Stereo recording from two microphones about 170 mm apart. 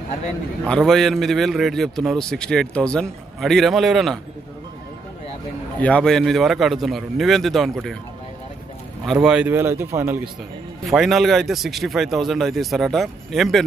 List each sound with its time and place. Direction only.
0.7 s a man's voice: centre (ahead or behind)
5.8 s a man's voice: 5° left (ahead or behind)
9.0 s speech: centre (ahead or behind)
10.9 s a man's voice: centre (ahead or behind)